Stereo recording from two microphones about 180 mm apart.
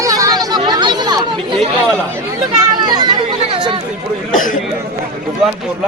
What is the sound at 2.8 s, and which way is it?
Speech, 25° right (ahead or behind).